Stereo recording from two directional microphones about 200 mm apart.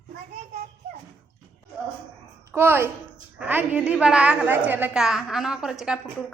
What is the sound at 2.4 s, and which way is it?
A child's voice, 10° right (ahead or behind).